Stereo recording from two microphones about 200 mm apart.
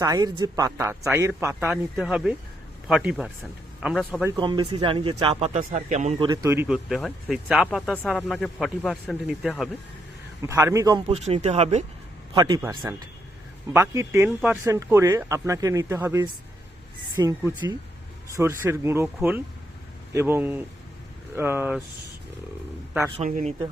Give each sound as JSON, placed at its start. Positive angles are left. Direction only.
{"t": 0.0, "sound": "speech", "side_deg": -20}
{"t": 4.4, "sound": "speech", "side_deg": -20}
{"t": 5.5, "sound": "a man's voice", "side_deg": -35}
{"t": 6.2, "sound": "speech", "side_deg": -15}
{"t": 6.7, "sound": "speech", "side_deg": 0}
{"t": 10.4, "sound": "speech", "side_deg": -15}
{"t": 12.3, "sound": "a man's voice", "side_deg": -20}
{"t": 23.1, "sound": "a man's voice", "side_deg": -35}